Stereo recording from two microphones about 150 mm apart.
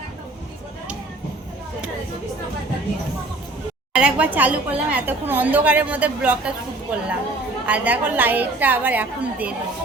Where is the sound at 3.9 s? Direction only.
5° right (ahead or behind).